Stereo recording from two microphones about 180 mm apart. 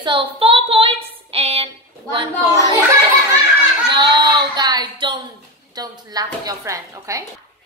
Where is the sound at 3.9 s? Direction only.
25° right (ahead or behind).